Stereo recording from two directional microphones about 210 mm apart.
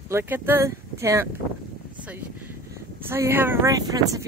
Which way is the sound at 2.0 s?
10° right (ahead or behind).